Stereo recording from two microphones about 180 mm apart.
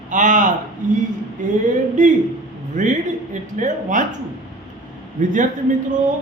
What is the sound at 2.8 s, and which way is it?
A woman's voice, 45° right (ahead or behind).